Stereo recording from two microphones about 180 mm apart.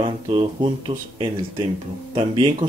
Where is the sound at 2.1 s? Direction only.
30° right (ahead or behind).